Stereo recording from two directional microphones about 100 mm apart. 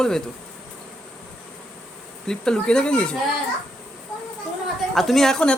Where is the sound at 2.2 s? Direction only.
5° left (ahead or behind).